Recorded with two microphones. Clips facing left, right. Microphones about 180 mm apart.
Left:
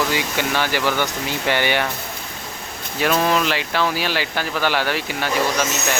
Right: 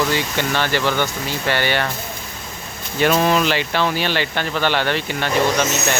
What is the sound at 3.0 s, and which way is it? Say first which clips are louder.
Speech: right 2 dB; 5° right (ahead or behind).